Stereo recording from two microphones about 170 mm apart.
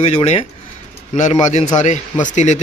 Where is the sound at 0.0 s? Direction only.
40° left (ahead or behind).